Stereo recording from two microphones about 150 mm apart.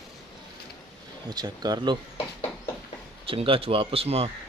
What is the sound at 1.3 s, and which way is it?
Speech, 25° right (ahead or behind).